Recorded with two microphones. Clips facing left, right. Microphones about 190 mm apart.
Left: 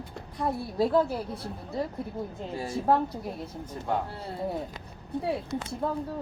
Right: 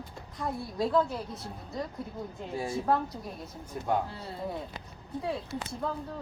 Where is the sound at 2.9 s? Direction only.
25° left (ahead or behind).